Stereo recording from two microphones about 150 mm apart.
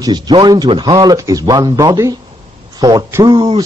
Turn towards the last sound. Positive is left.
turn(degrees=-30)  # may be behind; listen again after turning